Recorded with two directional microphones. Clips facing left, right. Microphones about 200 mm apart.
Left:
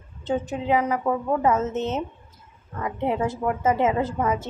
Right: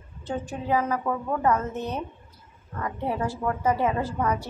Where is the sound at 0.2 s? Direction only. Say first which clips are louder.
Left 5 dB; 20° left (ahead or behind).